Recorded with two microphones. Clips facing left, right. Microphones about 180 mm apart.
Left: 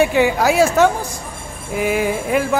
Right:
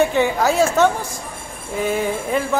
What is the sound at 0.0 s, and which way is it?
Speech, 10° left (ahead or behind).